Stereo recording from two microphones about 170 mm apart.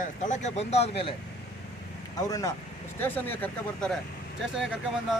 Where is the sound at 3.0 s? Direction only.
10° left (ahead or behind).